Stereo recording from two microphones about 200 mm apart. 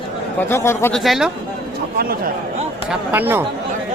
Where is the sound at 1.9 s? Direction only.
50° right (ahead or behind).